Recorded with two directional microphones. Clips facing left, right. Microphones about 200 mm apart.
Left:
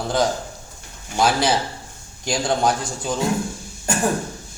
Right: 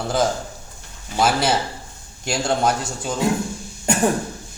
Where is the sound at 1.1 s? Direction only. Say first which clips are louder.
Even; centre (ahead or behind).